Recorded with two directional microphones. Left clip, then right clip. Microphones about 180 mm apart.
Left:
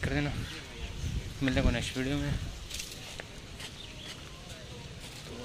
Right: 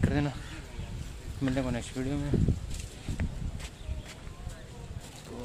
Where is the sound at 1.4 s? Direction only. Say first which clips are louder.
Left 1 dB; 10° right (ahead or behind).